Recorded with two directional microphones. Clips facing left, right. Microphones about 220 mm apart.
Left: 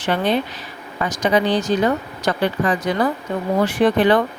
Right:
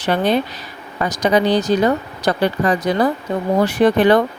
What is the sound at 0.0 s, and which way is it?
A woman's voice, 40° right (ahead or behind).